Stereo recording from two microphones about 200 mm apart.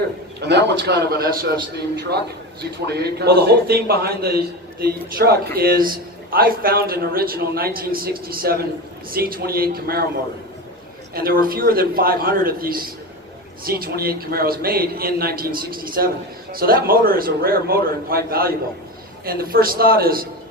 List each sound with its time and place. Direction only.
0.3 s a man's voice: 60° right (ahead or behind)
11.1 s a man's voice: 45° right (ahead or behind)